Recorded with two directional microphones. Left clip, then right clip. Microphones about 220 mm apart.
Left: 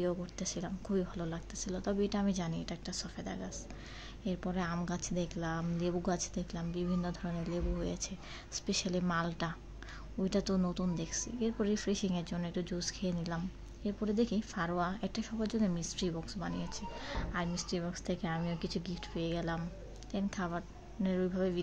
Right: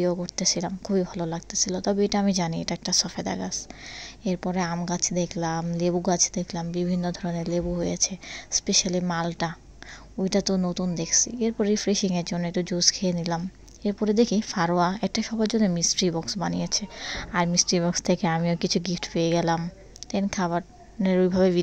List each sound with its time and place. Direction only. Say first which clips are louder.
0.0 s a woman's voice: right 11 dB; 30° right (ahead or behind)